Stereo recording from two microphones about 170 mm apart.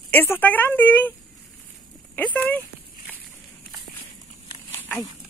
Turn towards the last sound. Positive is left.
turn(degrees=10)  # may be behind; listen again after turning